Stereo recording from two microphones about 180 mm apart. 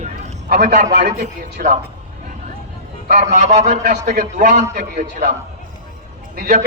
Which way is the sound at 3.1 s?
40° right (ahead or behind).